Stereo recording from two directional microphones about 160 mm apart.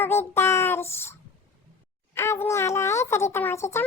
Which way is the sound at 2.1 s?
15° left (ahead or behind).